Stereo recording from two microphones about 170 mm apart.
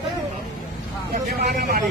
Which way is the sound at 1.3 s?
65° right (ahead or behind).